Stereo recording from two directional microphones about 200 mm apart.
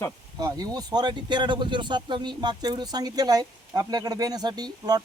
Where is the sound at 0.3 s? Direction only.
20° right (ahead or behind).